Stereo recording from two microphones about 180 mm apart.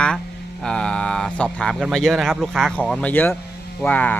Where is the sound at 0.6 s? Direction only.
5° left (ahead or behind).